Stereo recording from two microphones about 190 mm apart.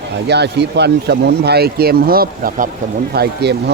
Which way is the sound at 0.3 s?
60° right (ahead or behind).